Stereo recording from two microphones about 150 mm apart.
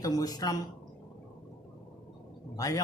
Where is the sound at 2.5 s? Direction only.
25° left (ahead or behind).